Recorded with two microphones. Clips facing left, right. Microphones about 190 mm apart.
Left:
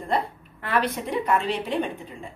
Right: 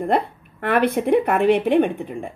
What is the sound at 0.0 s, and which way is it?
A woman's voice, 60° right (ahead or behind).